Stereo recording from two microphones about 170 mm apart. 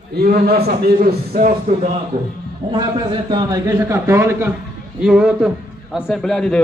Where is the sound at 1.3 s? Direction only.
40° right (ahead or behind).